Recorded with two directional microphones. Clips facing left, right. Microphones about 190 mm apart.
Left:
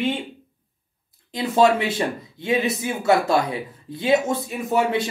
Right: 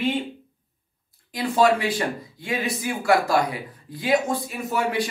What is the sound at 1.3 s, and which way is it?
Speech, 25° left (ahead or behind).